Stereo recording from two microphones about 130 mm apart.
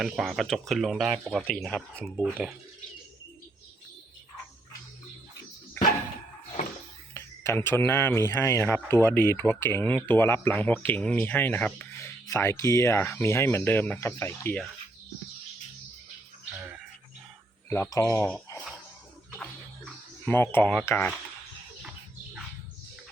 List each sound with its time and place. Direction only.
0.0 s speech: centre (ahead or behind)
5.8 s a sound: 20° left (ahead or behind)
7.1 s speech: 20° left (ahead or behind)
17.9 s speech: 20° left (ahead or behind)
20.2 s speech: 15° left (ahead or behind)